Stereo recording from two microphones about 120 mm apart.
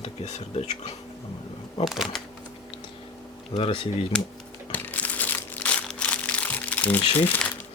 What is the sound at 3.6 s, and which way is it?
Speech, 50° left (ahead or behind).